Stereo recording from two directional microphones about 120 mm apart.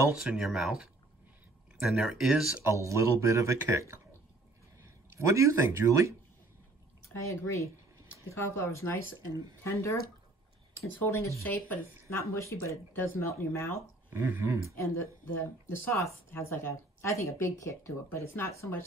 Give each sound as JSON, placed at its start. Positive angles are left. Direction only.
{"t": 0.1, "sound": "speech", "side_deg": -5}
{"t": 2.6, "sound": "speech", "side_deg": -25}
{"t": 7.2, "sound": "speech", "side_deg": 25}
{"t": 11.0, "sound": "speech", "side_deg": 25}
{"t": 14.1, "sound": "speech", "side_deg": -20}
{"t": 14.8, "sound": "speech", "side_deg": 20}